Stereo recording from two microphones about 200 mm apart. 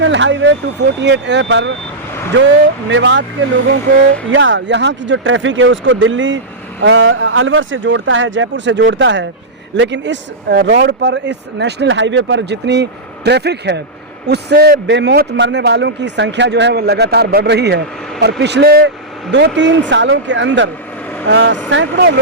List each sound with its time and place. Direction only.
0.0 s speech: 65° right (ahead or behind)
2.9 s speech: 65° right (ahead or behind)
4.3 s speech: 65° right (ahead or behind)